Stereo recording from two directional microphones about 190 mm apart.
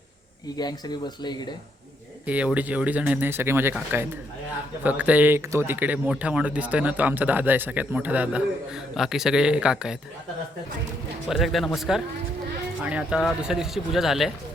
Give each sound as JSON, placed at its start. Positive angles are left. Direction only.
{"t": 0.5, "sound": "speech", "side_deg": 20}
{"t": 2.2, "sound": "speech", "side_deg": -5}
{"t": 11.3, "sound": "speech", "side_deg": 0}